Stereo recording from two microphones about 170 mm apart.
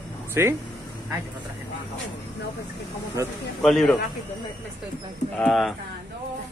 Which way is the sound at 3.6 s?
5° left (ahead or behind).